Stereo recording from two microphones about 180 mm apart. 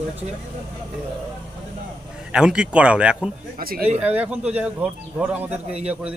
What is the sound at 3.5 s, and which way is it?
Speech, 55° right (ahead or behind).